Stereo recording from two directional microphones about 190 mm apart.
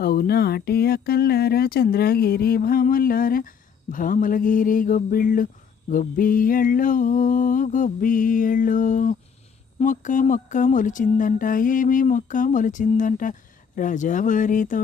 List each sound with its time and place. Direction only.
0.0 s speech: 55° left (ahead or behind)